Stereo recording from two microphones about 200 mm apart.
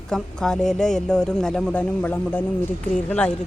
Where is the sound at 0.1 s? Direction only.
5° left (ahead or behind).